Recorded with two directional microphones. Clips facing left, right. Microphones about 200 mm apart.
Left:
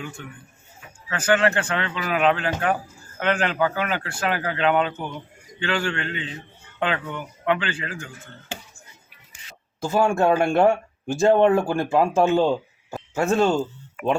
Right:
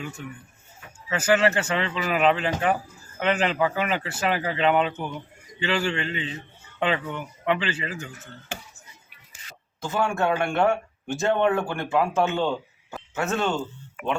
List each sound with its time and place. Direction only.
1.1 s speech: 5° right (ahead or behind)
9.8 s speech: 30° left (ahead or behind)
12.9 s a sound: 30° left (ahead or behind)